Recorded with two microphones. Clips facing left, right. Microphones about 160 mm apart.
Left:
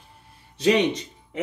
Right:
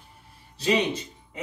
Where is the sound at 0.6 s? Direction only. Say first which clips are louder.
Left 4 dB; 90° left.